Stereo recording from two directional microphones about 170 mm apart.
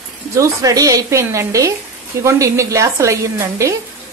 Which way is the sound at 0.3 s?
20° right (ahead or behind).